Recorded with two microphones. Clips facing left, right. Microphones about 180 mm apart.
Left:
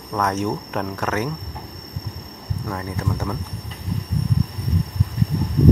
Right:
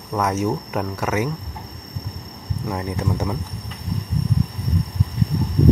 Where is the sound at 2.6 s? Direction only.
20° right (ahead or behind).